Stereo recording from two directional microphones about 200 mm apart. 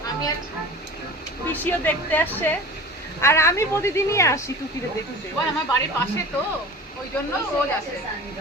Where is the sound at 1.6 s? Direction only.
10° left (ahead or behind).